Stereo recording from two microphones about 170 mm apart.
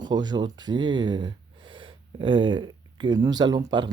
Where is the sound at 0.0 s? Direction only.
25° right (ahead or behind).